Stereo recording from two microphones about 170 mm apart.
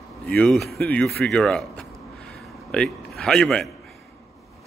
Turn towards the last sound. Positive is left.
turn(degrees=5)  # may be behind; listen again after turning